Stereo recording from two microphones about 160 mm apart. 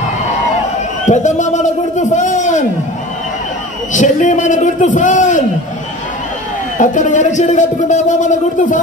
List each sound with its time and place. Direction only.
1.0 s speech: 50° left (ahead or behind)
3.9 s speech: 50° left (ahead or behind)
6.8 s speech: 50° left (ahead or behind)